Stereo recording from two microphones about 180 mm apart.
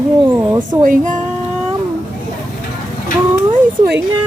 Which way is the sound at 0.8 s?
45° right (ahead or behind).